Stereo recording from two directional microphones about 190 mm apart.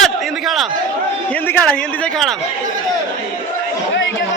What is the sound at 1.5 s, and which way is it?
Speech, 5° left (ahead or behind).